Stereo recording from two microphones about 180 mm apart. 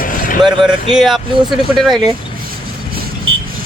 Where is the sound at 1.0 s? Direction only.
Centre (ahead or behind).